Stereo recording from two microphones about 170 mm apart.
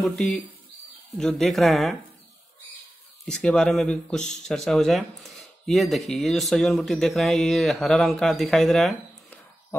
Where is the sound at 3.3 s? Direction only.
5° left (ahead or behind).